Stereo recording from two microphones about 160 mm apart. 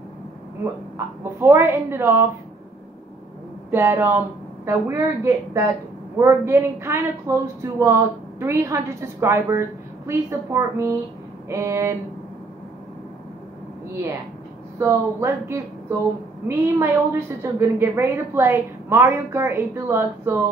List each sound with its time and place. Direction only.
0.9 s a woman's voice: 15° right (ahead or behind)
3.7 s a woman's voice: 15° right (ahead or behind)
14.8 s a woman's voice: 15° right (ahead or behind)